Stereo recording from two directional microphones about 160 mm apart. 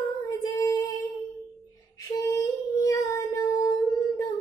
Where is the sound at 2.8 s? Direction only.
20° left (ahead or behind).